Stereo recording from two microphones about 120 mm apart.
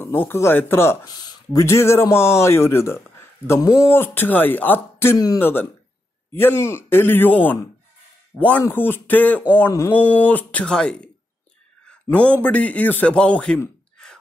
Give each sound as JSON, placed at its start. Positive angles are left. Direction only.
{"t": 0.0, "sound": "speech", "side_deg": 15}
{"t": 1.0, "sound": "speech", "side_deg": 30}
{"t": 9.9, "sound": "speech", "side_deg": -15}
{"t": 10.2, "sound": "speech", "side_deg": 15}
{"t": 12.4, "sound": "speech", "side_deg": 10}
{"t": 14.0, "sound": "a sound", "side_deg": 5}